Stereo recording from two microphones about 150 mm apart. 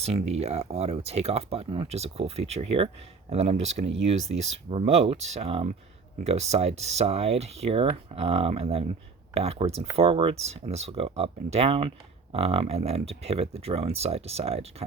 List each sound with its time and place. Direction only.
0.0 s speech: 45° right (ahead or behind)